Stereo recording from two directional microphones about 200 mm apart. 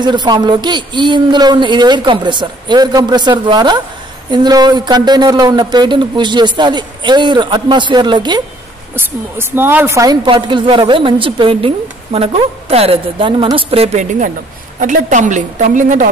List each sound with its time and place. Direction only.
0.0 s a woman's voice: 20° right (ahead or behind)
8.9 s a woman's voice: 10° right (ahead or behind); by 16.1 s 40° right (ahead or behind)